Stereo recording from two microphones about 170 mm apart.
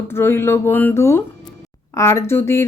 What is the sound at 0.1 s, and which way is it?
Speech, 15° left (ahead or behind).